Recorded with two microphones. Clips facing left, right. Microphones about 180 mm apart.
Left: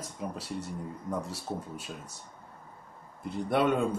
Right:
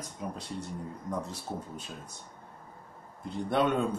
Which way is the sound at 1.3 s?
5° left (ahead or behind).